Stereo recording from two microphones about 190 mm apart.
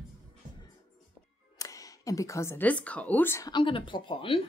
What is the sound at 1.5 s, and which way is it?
A woman's voice, 15° left (ahead or behind).